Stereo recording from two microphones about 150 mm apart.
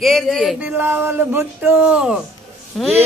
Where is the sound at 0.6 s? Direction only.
10° right (ahead or behind).